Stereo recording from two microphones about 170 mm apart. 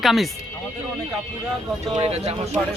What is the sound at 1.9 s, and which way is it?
Speech, 35° right (ahead or behind).